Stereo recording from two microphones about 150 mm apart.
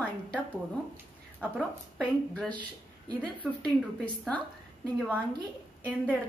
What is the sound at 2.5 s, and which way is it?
Speech, 30° right (ahead or behind).